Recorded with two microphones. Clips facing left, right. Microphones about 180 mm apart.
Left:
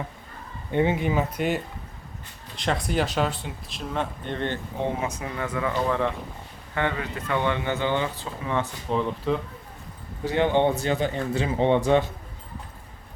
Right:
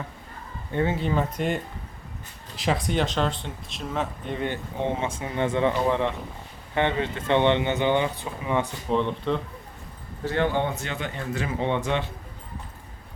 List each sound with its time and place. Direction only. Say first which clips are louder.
0.7 s speech: left 2 dB; 15° left (ahead or behind); by 4.6 s 10° right (ahead or behind)
4.9 s speech: right 2 dB; 25° right (ahead or behind)
8.9 s speech: even; 5° left (ahead or behind)
10.2 s speech: left 3 dB; 15° left (ahead or behind)
10.8 s speech: left 7 dB; 35° left (ahead or behind)